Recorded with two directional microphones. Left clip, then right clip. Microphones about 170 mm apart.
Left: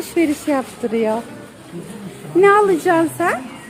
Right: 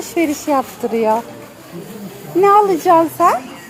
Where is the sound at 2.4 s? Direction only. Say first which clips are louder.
Right 2 dB; 15° left (ahead or behind).